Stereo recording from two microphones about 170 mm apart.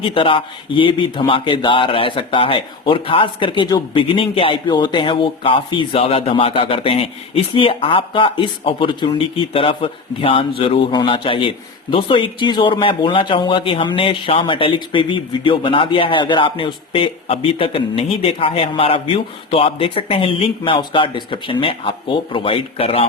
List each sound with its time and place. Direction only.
0.0 s a man's voice: 30° left (ahead or behind)